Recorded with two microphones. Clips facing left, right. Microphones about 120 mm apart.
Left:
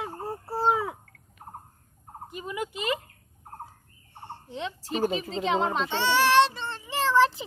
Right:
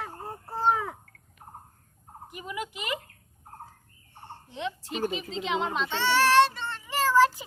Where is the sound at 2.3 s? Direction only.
25° left (ahead or behind).